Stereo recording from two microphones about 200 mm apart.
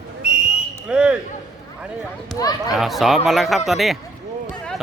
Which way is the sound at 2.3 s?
20° left (ahead or behind).